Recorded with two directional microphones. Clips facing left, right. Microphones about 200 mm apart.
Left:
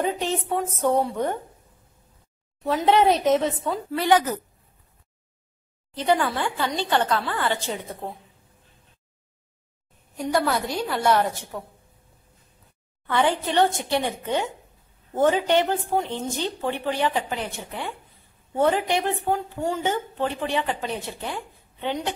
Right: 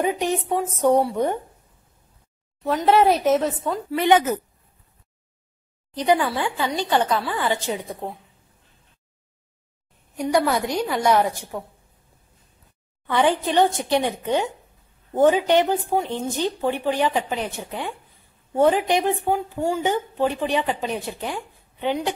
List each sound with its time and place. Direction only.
0.0 s a woman's voice: 15° right (ahead or behind)
2.6 s a woman's voice: centre (ahead or behind)
3.9 s a woman's voice: 20° right (ahead or behind)
5.9 s a woman's voice: 15° right (ahead or behind)
10.5 s a woman's voice: 15° right (ahead or behind)
13.0 s a woman's voice: 15° right (ahead or behind)